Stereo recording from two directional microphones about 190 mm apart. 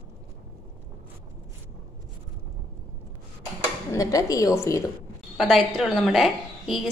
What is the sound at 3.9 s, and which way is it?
Speech, 20° left (ahead or behind).